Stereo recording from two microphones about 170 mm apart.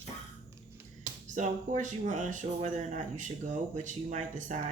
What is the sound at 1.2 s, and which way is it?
Speech, 45° right (ahead or behind).